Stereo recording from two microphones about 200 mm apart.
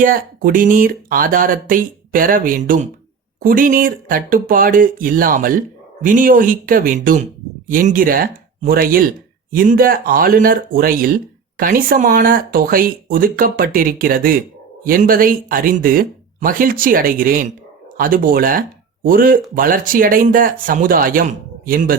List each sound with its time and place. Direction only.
0.0 s speech: 45° right (ahead or behind)